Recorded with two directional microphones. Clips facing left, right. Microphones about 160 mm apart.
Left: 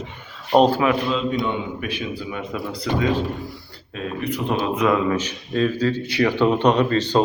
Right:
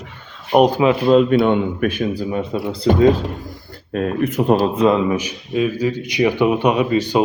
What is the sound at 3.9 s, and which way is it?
Speech, 50° right (ahead or behind).